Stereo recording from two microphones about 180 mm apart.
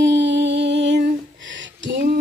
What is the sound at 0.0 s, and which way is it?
Music, 75° right (ahead or behind).